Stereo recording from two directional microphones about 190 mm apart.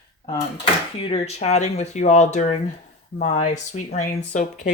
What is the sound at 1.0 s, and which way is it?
Speech, 30° left (ahead or behind).